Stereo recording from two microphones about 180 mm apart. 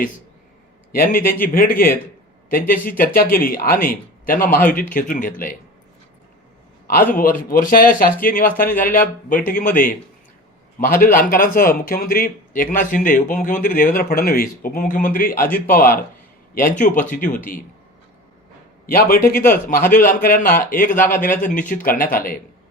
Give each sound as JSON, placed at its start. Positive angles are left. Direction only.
{"t": 0.9, "sound": "a man's voice", "side_deg": 55}
{"t": 6.8, "sound": "a man's voice", "side_deg": 55}
{"t": 18.9, "sound": "a man's voice", "side_deg": 55}